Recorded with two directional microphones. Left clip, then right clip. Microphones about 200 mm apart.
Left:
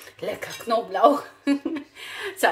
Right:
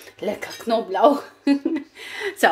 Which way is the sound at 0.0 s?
30° right (ahead or behind).